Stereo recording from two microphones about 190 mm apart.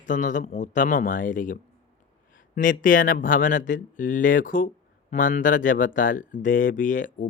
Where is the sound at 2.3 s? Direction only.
45° left (ahead or behind).